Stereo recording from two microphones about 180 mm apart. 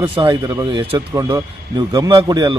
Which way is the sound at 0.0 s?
30° right (ahead or behind).